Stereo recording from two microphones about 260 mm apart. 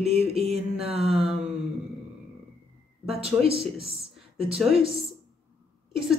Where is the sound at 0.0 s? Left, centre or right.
Right.